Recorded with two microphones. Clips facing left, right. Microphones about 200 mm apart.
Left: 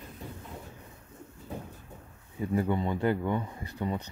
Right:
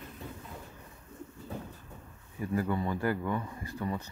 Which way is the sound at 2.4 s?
20° left (ahead or behind).